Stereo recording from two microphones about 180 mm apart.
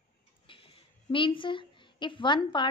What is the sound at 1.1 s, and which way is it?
A woman's voice, 30° left (ahead or behind).